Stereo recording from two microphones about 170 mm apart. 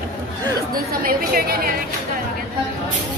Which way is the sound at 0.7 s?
55° right (ahead or behind).